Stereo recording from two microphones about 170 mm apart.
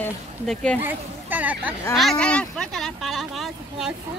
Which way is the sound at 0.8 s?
10° right (ahead or behind).